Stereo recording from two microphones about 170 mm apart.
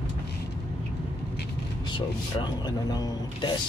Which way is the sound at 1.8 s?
30° left (ahead or behind).